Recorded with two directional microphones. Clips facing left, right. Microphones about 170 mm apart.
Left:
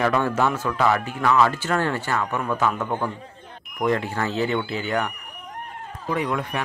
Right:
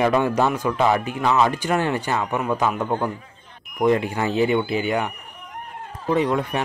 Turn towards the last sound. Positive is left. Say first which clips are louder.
# right 4 dB
turn(degrees=-25)  # may be behind; listen again after turning